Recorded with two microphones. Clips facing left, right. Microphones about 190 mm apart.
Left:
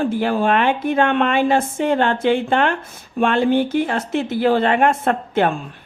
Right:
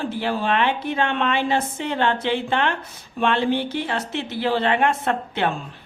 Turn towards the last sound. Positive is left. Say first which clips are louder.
# left 5 dB
turn(degrees=50)  # may be behind; listen again after turning